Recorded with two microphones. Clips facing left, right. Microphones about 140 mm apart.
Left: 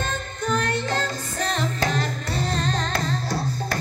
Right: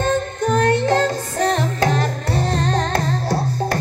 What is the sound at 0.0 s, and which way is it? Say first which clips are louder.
Music: right 9 dB; 55° right (ahead or behind).